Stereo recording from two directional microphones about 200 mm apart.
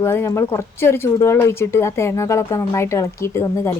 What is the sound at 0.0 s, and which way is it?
Speech, 15° left (ahead or behind).